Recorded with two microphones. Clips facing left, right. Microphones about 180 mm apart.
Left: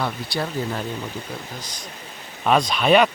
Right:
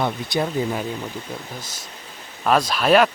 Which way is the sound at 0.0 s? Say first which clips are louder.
Right 3 dB; 20° right (ahead or behind).